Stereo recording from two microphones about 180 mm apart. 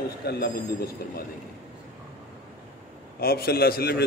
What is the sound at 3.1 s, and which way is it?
Speech, 60° left (ahead or behind).